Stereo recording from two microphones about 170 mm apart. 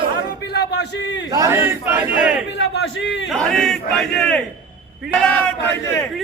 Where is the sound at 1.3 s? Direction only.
15° right (ahead or behind).